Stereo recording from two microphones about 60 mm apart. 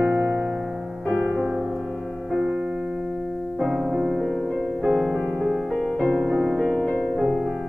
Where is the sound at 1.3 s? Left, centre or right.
Right.